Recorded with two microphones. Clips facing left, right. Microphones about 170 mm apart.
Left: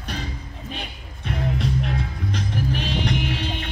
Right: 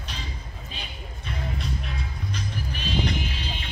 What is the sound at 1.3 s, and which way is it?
Music, 65° left (ahead or behind).